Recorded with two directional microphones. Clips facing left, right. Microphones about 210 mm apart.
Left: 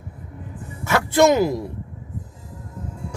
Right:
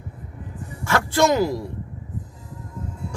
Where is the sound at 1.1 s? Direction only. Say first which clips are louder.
Left 4 dB; 20° left (ahead or behind).